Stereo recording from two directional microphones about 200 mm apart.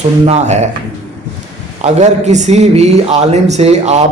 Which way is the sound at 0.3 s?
35° right (ahead or behind).